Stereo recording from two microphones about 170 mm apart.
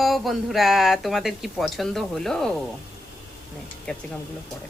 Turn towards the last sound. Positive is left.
turn(degrees=5)  # may be behind; listen again after turning